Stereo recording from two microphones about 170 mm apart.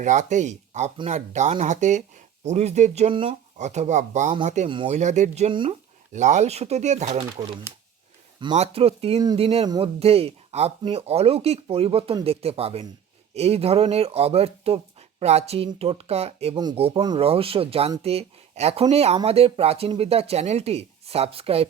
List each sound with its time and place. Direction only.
0.0 s speech: 45° right (ahead or behind)
3.6 s speech: 40° right (ahead or behind)
6.1 s speech: 45° right (ahead or behind)
7.2 s speech: 30° right (ahead or behind)
9.6 s speech: 25° right (ahead or behind)
10.0 s speech: 35° right (ahead or behind)